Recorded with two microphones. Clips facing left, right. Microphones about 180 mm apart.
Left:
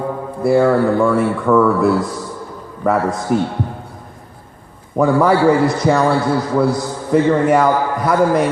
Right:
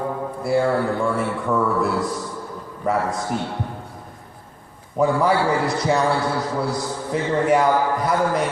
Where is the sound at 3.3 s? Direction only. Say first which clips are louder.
Left 12 dB; 55° left (ahead or behind).